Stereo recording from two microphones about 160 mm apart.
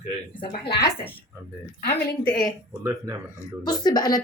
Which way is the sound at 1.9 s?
10° left (ahead or behind).